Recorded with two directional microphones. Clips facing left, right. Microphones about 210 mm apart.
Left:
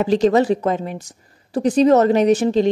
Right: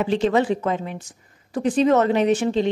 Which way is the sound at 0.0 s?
40° left (ahead or behind).